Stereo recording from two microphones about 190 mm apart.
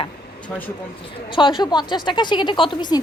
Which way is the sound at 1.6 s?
25° left (ahead or behind).